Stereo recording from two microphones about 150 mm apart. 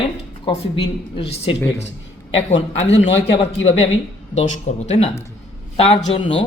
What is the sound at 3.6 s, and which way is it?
Speech, 45° left (ahead or behind).